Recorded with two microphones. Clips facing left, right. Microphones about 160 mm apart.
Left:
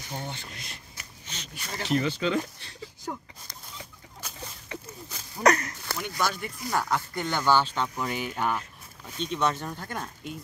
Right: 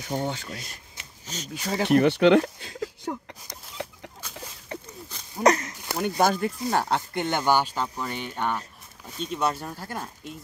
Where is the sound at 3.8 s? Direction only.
70° right (ahead or behind).